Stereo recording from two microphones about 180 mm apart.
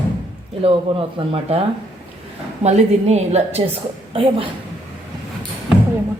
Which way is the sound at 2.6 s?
35° right (ahead or behind).